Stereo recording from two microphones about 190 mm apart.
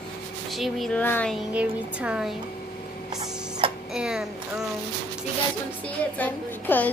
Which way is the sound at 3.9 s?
5° right (ahead or behind).